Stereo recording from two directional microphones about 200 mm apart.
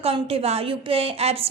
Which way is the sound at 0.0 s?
30° right (ahead or behind).